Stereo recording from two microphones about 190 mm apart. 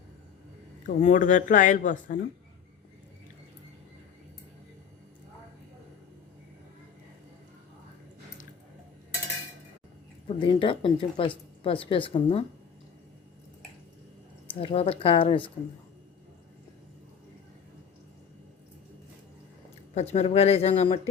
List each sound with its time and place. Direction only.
0.9 s speech: 45° left (ahead or behind)
10.2 s speech: 25° left (ahead or behind)
14.6 s speech: 30° left (ahead or behind)
19.9 s speech: 35° left (ahead or behind)